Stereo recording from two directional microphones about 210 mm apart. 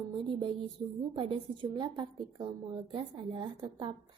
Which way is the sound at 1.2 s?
25° right (ahead or behind).